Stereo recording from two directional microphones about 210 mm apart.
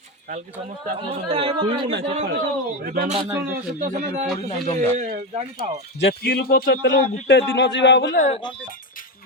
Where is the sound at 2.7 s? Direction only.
45° right (ahead or behind).